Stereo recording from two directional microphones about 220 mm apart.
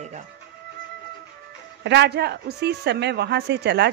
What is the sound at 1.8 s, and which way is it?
Speech, 50° right (ahead or behind).